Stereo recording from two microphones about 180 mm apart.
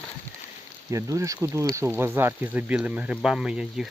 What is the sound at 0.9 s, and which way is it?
Speech, 15° right (ahead or behind).